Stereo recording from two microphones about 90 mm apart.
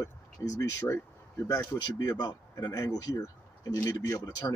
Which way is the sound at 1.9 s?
50° left (ahead or behind).